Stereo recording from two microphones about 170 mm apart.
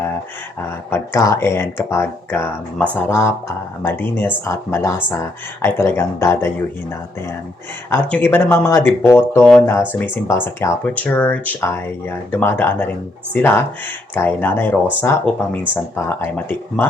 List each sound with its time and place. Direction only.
0.9 s speech: 15° left (ahead or behind)
7.9 s speech: 15° left (ahead or behind)